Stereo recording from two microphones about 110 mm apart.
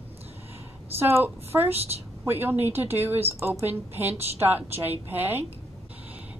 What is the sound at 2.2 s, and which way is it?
A woman's voice, 20° right (ahead or behind).